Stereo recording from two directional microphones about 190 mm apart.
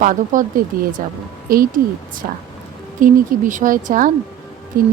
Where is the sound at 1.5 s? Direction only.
50° right (ahead or behind).